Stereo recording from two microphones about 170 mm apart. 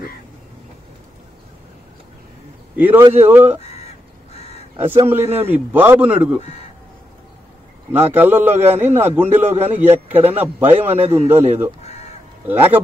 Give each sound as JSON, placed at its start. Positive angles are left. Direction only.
{"t": 2.7, "sound": "a man's voice", "side_deg": -10}
{"t": 3.6, "sound": "crow", "side_deg": 40}
{"t": 5.0, "sound": "a man's voice", "side_deg": -15}
{"t": 6.4, "sound": "speech", "side_deg": 40}
{"t": 7.9, "sound": "a man's voice", "side_deg": -10}